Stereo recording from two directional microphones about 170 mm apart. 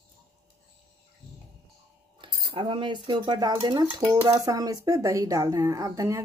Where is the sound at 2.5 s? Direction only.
30° right (ahead or behind).